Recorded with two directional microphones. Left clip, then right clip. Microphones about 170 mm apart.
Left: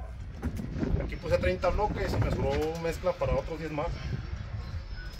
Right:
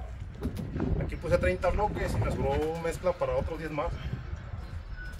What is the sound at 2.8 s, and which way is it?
Speech, 5° left (ahead or behind).